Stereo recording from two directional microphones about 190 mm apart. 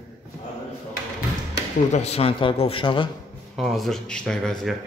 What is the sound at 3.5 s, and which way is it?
Speech, centre (ahead or behind).